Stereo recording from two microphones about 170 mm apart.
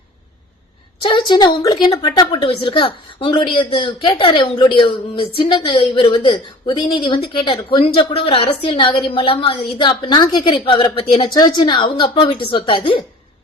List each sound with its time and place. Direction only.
1.0 s a woman's voice: 25° left (ahead or behind)